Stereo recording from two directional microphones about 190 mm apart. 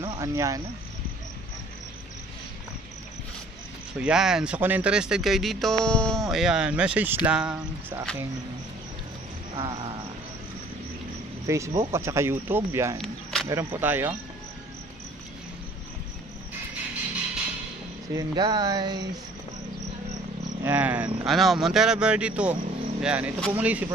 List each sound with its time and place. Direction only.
0.0 s cricket: 15° right (ahead or behind)
4.0 s speech: 5° right (ahead or behind)
9.6 s speech: 30° right (ahead or behind)
11.4 s speech: 15° right (ahead or behind)
13.0 s cricket: centre (ahead or behind)
13.5 s speech: 15° right (ahead or behind)
18.1 s speech: 20° right (ahead or behind)
20.6 s speech: 10° right (ahead or behind)